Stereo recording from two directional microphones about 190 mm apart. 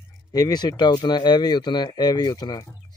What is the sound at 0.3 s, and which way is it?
Speech, 20° left (ahead or behind).